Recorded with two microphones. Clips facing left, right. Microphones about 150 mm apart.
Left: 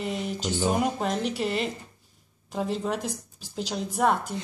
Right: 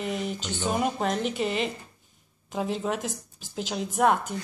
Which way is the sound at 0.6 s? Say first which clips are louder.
Even; centre (ahead or behind).